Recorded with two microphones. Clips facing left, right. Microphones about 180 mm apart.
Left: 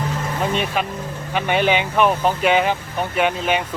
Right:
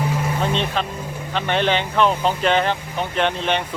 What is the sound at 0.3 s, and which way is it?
Speech, 10° left (ahead or behind).